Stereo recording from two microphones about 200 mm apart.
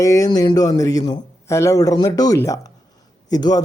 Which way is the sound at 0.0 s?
15° left (ahead or behind).